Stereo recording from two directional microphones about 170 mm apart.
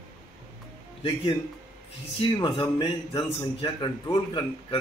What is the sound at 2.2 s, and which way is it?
A man's voice, 30° left (ahead or behind).